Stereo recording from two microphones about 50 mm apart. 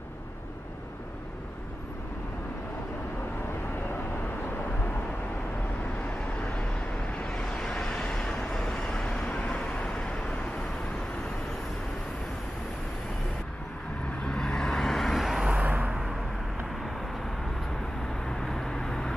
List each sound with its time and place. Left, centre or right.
7.2 s vehicle: centre
14.2 s vehicle: centre
15.6 s vehicle: right
18.2 s vehicle: centre